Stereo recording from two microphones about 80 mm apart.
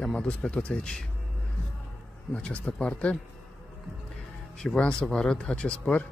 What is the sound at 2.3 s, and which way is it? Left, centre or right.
Speech, centre.